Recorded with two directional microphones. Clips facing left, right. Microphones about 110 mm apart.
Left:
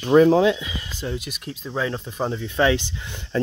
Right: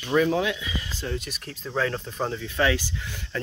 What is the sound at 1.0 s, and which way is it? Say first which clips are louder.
Speech: left 5 dB; 10° left (ahead or behind).